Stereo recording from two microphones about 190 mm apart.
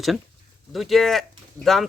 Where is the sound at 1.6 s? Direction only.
15° right (ahead or behind).